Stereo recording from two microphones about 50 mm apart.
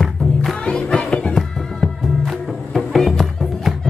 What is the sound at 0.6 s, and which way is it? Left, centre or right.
Music, centre.